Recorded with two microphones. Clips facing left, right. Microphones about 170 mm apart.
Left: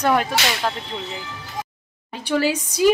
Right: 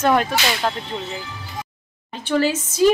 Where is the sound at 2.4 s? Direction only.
10° left (ahead or behind).